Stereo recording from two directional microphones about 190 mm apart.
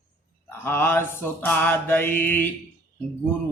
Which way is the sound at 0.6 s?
10° left (ahead or behind).